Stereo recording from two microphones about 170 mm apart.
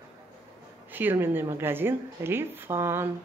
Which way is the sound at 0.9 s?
10° right (ahead or behind).